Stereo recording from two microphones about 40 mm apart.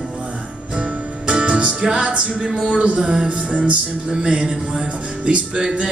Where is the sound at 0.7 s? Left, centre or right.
Right.